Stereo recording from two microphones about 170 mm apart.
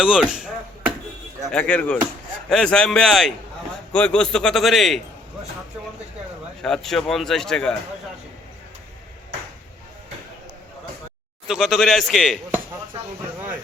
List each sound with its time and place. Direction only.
0.0 s chop: 5° right (ahead or behind)
1.5 s a man's voice: 5° left (ahead or behind)
6.6 s a man's voice: centre (ahead or behind)
11.4 s a man's voice: centre (ahead or behind)